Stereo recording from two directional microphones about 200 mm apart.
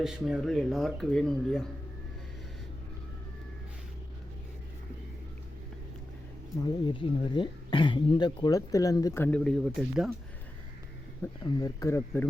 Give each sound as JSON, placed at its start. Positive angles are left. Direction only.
{"t": 0.0, "sound": "speech", "side_deg": 0}
{"t": 6.8, "sound": "speech", "side_deg": 25}
{"t": 11.4, "sound": "speech", "side_deg": 15}